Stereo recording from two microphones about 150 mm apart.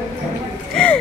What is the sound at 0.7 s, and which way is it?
Speech, 5° left (ahead or behind).